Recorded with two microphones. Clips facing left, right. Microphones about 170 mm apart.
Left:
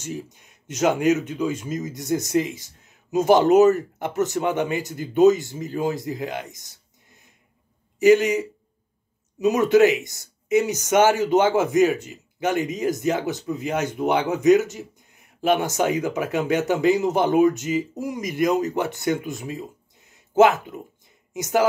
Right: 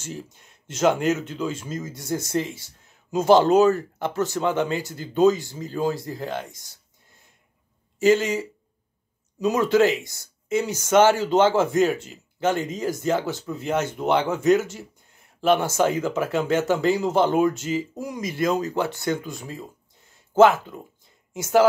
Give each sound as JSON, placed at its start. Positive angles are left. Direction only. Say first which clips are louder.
{"t": 0.8, "sound": "speech", "louder": "left 1 dB", "side_deg": 10}
{"t": 8.0, "sound": "speech", "louder": "left 3 dB", "side_deg": 15}
{"t": 9.4, "sound": "speech", "louder": "left 3 dB", "side_deg": 20}